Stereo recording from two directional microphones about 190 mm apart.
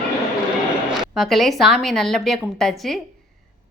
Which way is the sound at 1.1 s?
Centre (ahead or behind).